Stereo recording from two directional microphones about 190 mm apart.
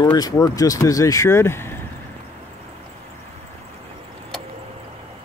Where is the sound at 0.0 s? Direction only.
20° left (ahead or behind).